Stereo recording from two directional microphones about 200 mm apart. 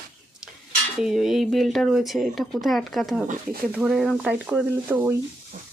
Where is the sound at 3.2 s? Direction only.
40° right (ahead or behind).